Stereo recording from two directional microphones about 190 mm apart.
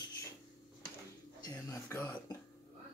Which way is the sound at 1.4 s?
15° left (ahead or behind).